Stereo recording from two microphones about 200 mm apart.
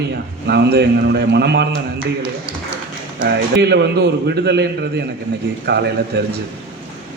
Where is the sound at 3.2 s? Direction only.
55° right (ahead or behind).